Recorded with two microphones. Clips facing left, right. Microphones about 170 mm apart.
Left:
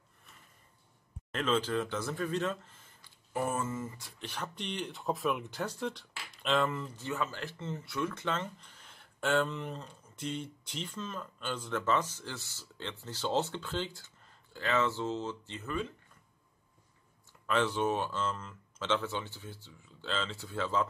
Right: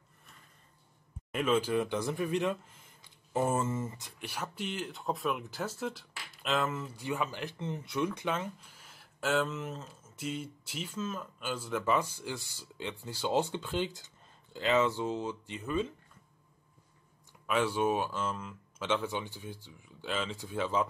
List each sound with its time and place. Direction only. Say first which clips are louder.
1.3 s speech: right 2 dB; 10° right (ahead or behind)
3.3 s speech: right 3 dB; 30° right (ahead or behind)
4.2 s speech: right 2 dB; 10° right (ahead or behind)
17.5 s speech: right 1 dB; 10° right (ahead or behind)